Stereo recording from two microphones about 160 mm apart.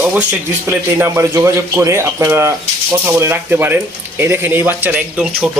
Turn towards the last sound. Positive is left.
turn(degrees=-10)  # may be behind; listen again after turning